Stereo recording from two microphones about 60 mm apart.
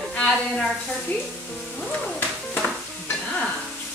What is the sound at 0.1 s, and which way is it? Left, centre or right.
Speech, centre.